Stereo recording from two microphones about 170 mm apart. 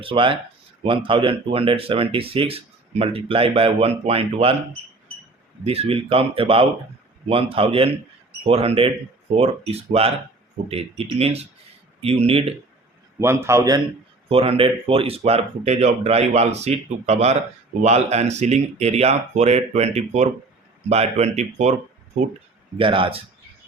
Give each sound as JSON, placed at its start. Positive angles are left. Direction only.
{"t": 0.0, "sound": "speech", "side_deg": -30}
{"t": 5.6, "sound": "speech", "side_deg": -35}
{"t": 13.1, "sound": "a man's voice", "side_deg": -15}
{"t": 14.3, "sound": "speech", "side_deg": -35}
{"t": 22.8, "sound": "speech", "side_deg": -30}